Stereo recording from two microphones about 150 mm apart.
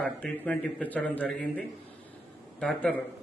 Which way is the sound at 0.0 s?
10° left (ahead or behind).